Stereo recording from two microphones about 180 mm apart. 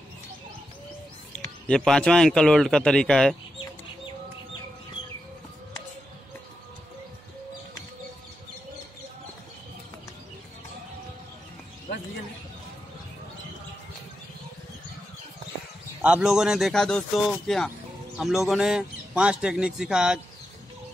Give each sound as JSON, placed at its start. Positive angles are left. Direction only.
{"t": 1.7, "sound": "speech", "side_deg": 5}
{"t": 16.0, "sound": "speech", "side_deg": -5}